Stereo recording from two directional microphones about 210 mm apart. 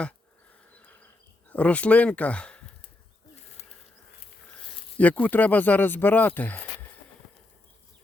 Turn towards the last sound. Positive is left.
turn(degrees=10)  # may be behind; listen again after turning